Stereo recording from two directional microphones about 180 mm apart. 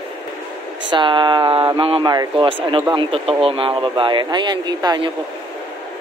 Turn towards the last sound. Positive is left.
turn(degrees=-25)  # may be behind; listen again after turning